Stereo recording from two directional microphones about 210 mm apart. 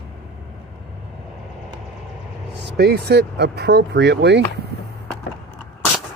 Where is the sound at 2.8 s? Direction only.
50° right (ahead or behind).